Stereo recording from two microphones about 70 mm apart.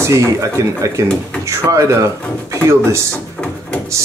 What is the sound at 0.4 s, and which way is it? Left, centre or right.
Speech, right.